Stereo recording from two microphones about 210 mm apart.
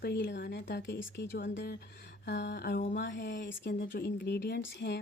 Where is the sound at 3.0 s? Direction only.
55° left (ahead or behind).